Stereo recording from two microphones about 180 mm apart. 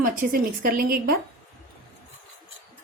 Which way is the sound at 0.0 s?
55° right (ahead or behind).